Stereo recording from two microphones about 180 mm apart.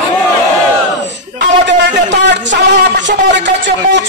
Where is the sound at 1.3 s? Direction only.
75° right (ahead or behind).